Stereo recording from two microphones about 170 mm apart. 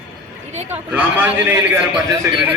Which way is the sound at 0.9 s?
10° right (ahead or behind).